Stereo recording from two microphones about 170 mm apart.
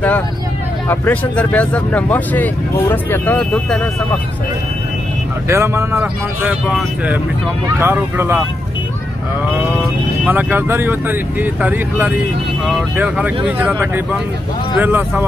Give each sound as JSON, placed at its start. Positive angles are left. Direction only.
{"t": 0.8, "sound": "speech", "side_deg": 10}
{"t": 5.5, "sound": "speech", "side_deg": -15}
{"t": 7.8, "sound": "speech", "side_deg": -15}
{"t": 10.2, "sound": "speech", "side_deg": -10}